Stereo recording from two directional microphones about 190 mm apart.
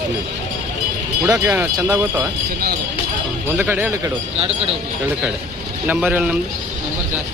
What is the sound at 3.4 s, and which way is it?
Speech, 10° right (ahead or behind).